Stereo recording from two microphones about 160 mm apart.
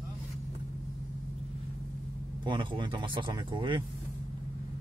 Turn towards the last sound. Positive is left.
turn(degrees=-30)  # may be behind; listen again after turning